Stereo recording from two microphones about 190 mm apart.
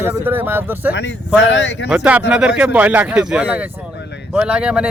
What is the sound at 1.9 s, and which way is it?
Speech, 5° right (ahead or behind).